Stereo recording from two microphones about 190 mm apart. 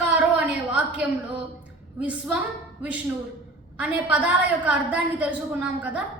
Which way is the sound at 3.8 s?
10° right (ahead or behind).